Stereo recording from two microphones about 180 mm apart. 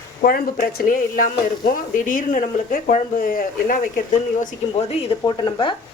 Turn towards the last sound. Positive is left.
turn(degrees=25)  # may be behind; listen again after turning